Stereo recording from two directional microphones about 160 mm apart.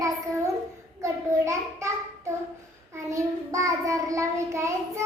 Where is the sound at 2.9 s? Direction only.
20° right (ahead or behind).